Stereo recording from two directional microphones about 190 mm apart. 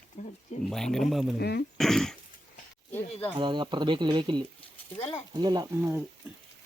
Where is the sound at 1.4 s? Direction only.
60° left (ahead or behind).